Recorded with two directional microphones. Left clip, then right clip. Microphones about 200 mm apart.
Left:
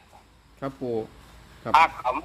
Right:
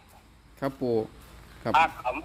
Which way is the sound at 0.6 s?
30° right (ahead or behind).